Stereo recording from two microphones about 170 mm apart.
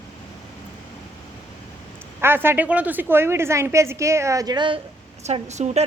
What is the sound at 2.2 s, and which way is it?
A woman's voice, 15° right (ahead or behind).